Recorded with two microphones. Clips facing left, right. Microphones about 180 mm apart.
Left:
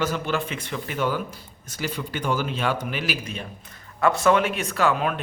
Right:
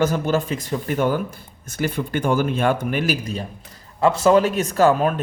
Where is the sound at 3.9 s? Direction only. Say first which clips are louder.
Right 4 dB; 30° right (ahead or behind).